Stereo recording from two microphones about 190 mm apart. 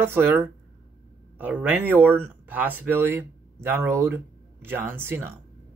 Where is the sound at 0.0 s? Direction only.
10° right (ahead or behind).